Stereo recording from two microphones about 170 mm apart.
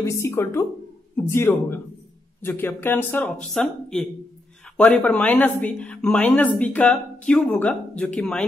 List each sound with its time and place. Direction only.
0.0 s speech: 15° left (ahead or behind)